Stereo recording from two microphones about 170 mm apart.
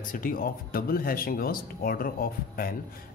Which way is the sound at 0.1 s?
55° left (ahead or behind).